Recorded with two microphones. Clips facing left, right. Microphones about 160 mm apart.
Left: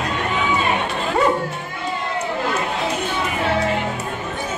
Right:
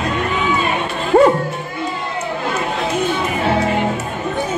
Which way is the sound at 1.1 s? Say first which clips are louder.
Right 9 dB; 45° right (ahead or behind).